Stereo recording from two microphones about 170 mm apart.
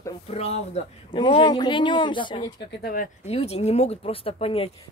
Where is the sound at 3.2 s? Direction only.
40° left (ahead or behind).